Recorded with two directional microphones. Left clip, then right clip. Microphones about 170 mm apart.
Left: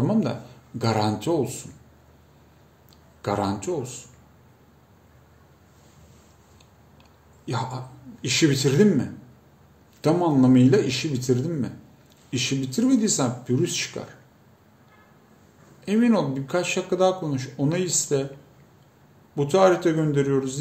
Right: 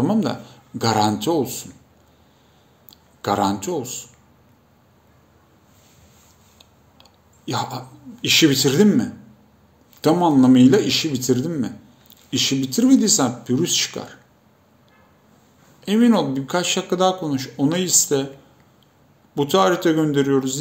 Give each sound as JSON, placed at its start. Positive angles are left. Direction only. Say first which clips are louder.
{"t": 0.0, "sound": "speech", "louder": "right 4 dB", "side_deg": 15}
{"t": 2.9, "sound": "a man's voice", "louder": "right 5 dB", "side_deg": 15}
{"t": 7.0, "sound": "speech", "louder": "right 6 dB", "side_deg": 15}
{"t": 15.8, "sound": "speech", "louder": "right 4 dB", "side_deg": 15}
{"t": 19.3, "sound": "speech", "louder": "right 1 dB", "side_deg": 15}